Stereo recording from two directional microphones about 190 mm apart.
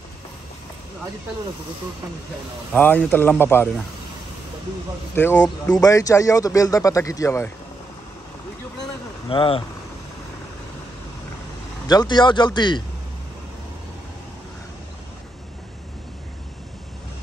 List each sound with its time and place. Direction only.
2.7 s speech: 10° left (ahead or behind)
5.1 s speech: 10° left (ahead or behind)
9.3 s speech: 25° left (ahead or behind)
11.9 s speech: 20° left (ahead or behind)